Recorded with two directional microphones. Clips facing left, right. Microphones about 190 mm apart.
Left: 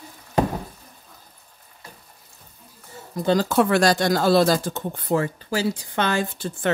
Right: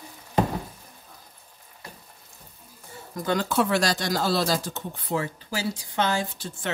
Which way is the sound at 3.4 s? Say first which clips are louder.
Left 5 dB; 50° left (ahead or behind).